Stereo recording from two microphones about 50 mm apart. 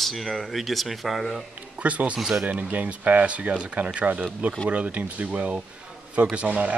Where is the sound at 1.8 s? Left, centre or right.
Right.